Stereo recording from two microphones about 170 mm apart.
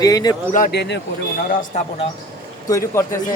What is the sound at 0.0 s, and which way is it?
Speech, 20° left (ahead or behind).